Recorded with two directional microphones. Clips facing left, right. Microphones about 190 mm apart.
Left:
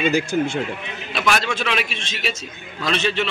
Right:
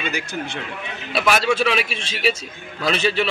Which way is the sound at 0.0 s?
45° left (ahead or behind).